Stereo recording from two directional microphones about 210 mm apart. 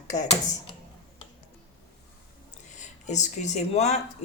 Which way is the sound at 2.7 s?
35° left (ahead or behind).